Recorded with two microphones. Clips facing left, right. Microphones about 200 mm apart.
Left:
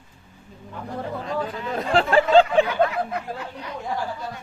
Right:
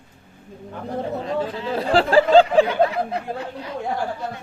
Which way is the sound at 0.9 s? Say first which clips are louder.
Right 4 dB; 25° right (ahead or behind).